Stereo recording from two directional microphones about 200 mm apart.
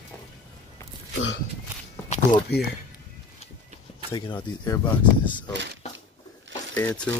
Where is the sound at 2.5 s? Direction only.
55° left (ahead or behind).